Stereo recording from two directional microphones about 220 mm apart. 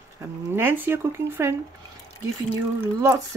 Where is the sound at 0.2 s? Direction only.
10° right (ahead or behind).